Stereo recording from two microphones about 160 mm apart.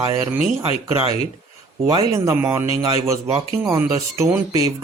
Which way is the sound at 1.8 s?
25° right (ahead or behind).